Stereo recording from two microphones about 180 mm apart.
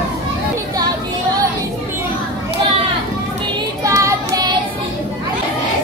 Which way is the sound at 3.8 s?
15° right (ahead or behind).